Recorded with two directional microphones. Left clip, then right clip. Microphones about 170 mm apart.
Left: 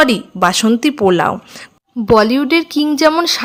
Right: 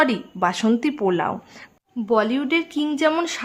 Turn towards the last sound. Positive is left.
turn(degrees=30)  # may be behind; listen again after turning